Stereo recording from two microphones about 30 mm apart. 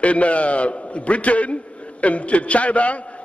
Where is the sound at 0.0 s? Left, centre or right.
Left.